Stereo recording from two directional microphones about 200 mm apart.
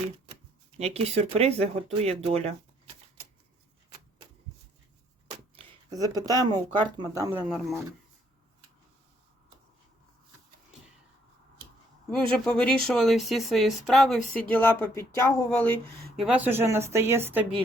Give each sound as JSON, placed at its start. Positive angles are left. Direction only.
{"t": 0.8, "sound": "speech", "side_deg": -30}
{"t": 5.3, "sound": "speech", "side_deg": -20}
{"t": 7.3, "sound": "speech", "side_deg": 0}
{"t": 12.1, "sound": "speech", "side_deg": 5}
{"t": 16.1, "sound": "speech", "side_deg": -5}